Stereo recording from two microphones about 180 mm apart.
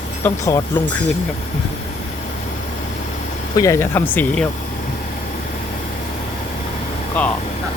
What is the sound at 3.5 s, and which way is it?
Speech, 15° left (ahead or behind).